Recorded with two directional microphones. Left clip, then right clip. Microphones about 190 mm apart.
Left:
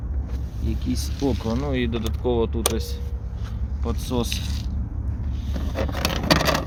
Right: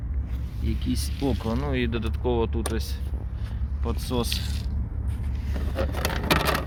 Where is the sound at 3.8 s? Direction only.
Centre (ahead or behind).